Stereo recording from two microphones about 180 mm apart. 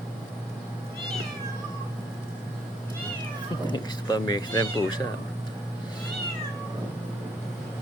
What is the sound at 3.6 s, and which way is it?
Speech, 25° left (ahead or behind).